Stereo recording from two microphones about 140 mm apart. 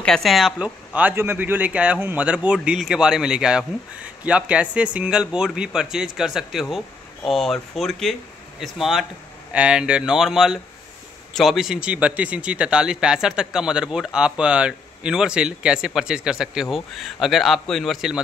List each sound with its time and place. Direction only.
0.0 s a man's voice: 5° left (ahead or behind)